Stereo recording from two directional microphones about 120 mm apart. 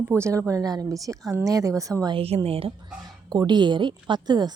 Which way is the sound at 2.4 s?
55° right (ahead or behind).